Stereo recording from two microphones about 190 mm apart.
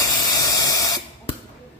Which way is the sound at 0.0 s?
20° left (ahead or behind).